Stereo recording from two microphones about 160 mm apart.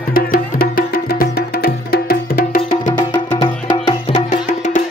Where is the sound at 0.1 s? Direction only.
65° left (ahead or behind).